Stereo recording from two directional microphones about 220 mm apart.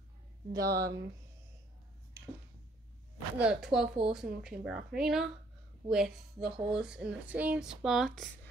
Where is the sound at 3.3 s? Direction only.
5° right (ahead or behind).